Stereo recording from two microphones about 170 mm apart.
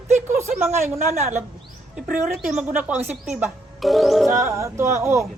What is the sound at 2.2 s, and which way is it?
A woman's voice, 5° right (ahead or behind).